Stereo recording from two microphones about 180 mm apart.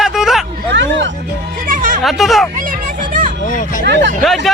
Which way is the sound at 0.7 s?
85° right.